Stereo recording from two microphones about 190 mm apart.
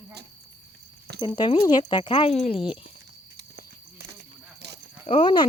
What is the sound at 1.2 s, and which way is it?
Speech, 25° left (ahead or behind).